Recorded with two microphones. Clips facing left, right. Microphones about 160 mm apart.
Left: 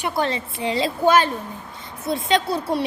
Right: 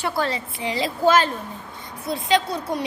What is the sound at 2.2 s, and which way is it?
Speech, 20° right (ahead or behind).